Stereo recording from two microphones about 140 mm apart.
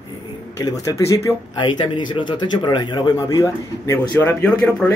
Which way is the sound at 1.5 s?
35° left (ahead or behind).